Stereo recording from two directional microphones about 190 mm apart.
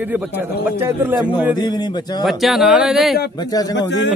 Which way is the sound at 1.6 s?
20° left (ahead or behind).